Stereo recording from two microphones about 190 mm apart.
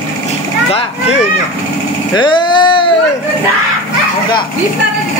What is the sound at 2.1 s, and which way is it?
Vehicle, 25° left (ahead or behind).